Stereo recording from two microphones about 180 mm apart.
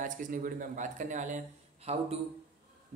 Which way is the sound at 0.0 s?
45° right (ahead or behind).